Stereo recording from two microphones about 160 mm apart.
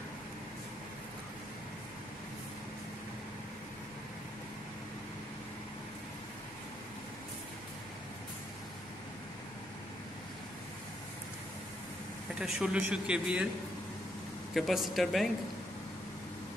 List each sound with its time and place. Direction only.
12.4 s a man's voice: 5° right (ahead or behind)
14.5 s a man's voice: centre (ahead or behind)